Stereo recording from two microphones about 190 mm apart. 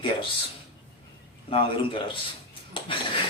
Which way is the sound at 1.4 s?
30° left (ahead or behind).